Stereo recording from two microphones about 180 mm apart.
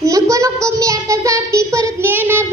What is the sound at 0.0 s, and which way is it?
Child singing, 15° right (ahead or behind).